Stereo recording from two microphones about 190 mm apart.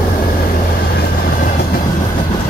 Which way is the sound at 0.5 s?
50° left (ahead or behind).